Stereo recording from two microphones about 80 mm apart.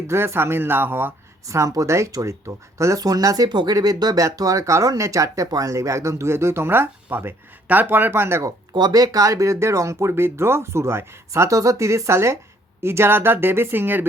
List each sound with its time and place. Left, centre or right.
0.1 s speech: right
1.5 s speech: right
8.7 s speech: right
11.3 s speech: right